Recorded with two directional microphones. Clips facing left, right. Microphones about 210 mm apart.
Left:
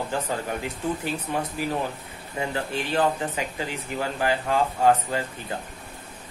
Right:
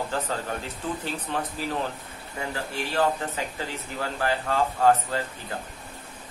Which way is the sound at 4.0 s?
15° left (ahead or behind).